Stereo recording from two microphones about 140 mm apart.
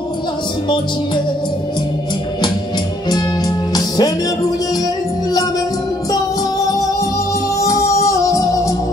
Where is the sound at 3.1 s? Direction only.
30° left (ahead or behind).